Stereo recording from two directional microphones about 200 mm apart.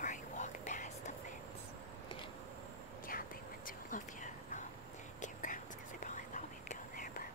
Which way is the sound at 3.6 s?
40° left (ahead or behind).